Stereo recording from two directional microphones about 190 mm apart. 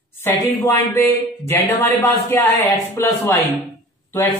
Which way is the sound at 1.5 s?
15° left (ahead or behind).